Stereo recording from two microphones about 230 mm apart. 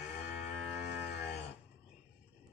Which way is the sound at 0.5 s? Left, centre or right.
Left.